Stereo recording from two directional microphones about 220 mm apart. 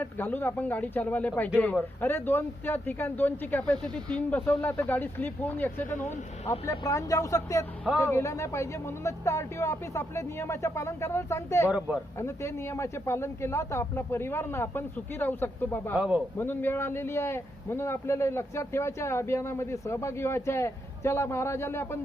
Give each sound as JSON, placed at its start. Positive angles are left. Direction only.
{"t": 0.0, "sound": "a man's voice", "side_deg": 10}
{"t": 6.0, "sound": "speech", "side_deg": 30}
{"t": 6.5, "sound": "a man's voice", "side_deg": 15}
{"t": 16.0, "sound": "a man's voice", "side_deg": -5}
{"t": 16.4, "sound": "a man's voice", "side_deg": 10}